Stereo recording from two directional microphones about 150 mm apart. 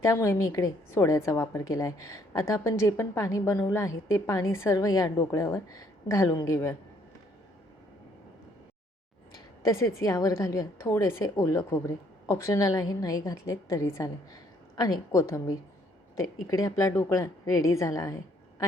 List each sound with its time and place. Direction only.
0.0 s a woman's voice: 20° left (ahead or behind)
9.6 s a woman's voice: 20° left (ahead or behind)